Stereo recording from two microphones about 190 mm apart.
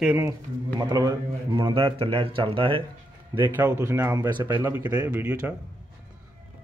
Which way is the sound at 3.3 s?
10° right (ahead or behind).